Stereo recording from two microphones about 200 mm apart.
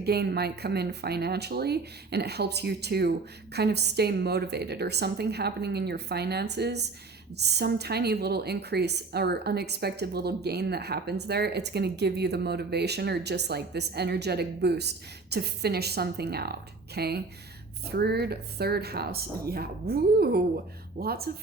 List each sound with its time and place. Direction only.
0.0 s a woman's voice: 55° right (ahead or behind)